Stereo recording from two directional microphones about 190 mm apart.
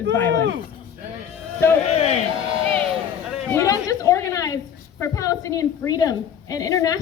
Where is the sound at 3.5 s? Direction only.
15° left (ahead or behind).